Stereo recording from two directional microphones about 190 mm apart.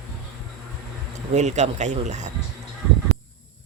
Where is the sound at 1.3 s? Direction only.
35° right (ahead or behind).